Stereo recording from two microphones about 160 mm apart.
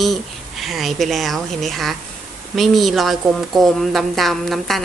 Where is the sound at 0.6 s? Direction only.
Centre (ahead or behind).